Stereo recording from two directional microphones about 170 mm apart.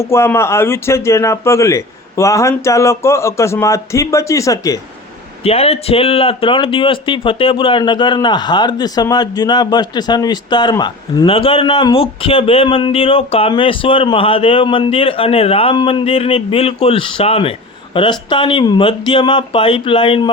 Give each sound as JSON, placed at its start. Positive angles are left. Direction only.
{"t": 0.0, "sound": "speech", "side_deg": 15}
{"t": 5.4, "sound": "a man's voice", "side_deg": 35}